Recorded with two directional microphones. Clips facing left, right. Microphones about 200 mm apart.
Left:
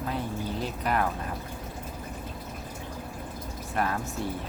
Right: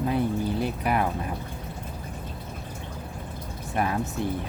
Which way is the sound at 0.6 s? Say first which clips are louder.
Right 3 dB; 10° right (ahead or behind).